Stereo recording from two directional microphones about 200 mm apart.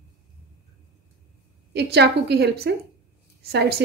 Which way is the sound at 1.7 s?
55° right (ahead or behind).